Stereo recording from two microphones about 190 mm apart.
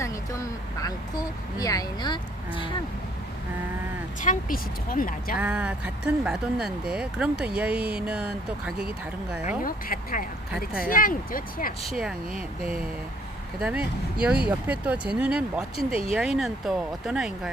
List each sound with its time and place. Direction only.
0.0 s speech: 15° left (ahead or behind)
4.2 s speech: 45° left (ahead or behind)
5.4 s speech: 5° right (ahead or behind)
9.6 s speech: 50° left (ahead or behind)
11.8 s speech: centre (ahead or behind)
13.6 s speech: 5° right (ahead or behind)